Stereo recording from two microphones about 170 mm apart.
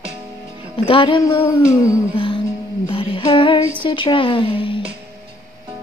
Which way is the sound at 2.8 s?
30° left (ahead or behind).